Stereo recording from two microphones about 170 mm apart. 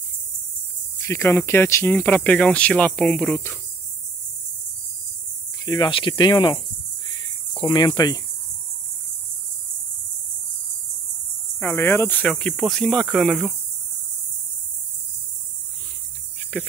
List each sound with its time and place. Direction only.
0.9 s speech: 20° left (ahead or behind)
5.7 s speech: 25° left (ahead or behind)
7.1 s cricket: 25° left (ahead or behind)
11.6 s speech: 10° left (ahead or behind)
16.5 s speech: 5° left (ahead or behind)